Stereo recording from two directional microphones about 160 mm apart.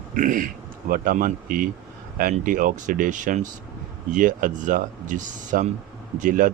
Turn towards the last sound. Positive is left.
turn(degrees=-55)  # may be behind; listen again after turning